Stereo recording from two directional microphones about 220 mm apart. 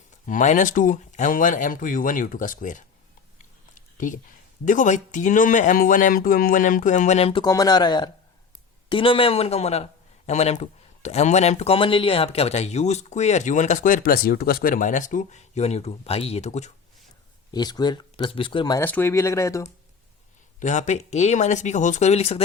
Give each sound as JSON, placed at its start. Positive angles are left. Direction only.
{"t": 0.3, "sound": "a man's voice", "side_deg": 35}
{"t": 3.8, "sound": "a sound", "side_deg": 35}
{"t": 4.6, "sound": "a man's voice", "side_deg": 35}
{"t": 17.5, "sound": "speech", "side_deg": 20}
{"t": 20.6, "sound": "a man's voice", "side_deg": 35}